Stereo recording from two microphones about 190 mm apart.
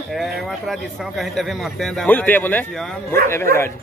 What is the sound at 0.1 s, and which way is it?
A man's voice, centre (ahead or behind).